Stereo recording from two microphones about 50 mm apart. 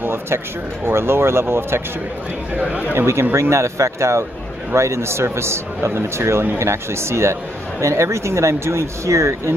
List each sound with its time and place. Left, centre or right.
0.0 s a sound: right
0.8 s a man's voice: right
2.5 s speech: right
3.3 s a man's voice: right
7.8 s speech: right